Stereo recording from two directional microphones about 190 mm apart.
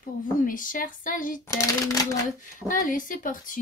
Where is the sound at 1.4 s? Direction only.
15° left (ahead or behind).